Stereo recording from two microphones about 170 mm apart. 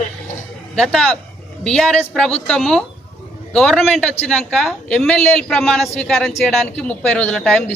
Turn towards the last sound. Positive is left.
turn(degrees=5)  # may be behind; listen again after turning